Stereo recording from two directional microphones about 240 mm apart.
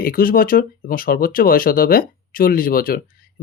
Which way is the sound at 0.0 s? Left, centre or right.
Left.